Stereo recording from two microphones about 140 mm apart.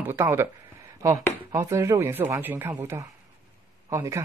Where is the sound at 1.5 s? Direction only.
20° right (ahead or behind).